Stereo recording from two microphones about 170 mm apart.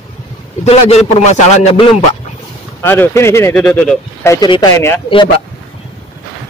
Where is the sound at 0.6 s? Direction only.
40° left (ahead or behind).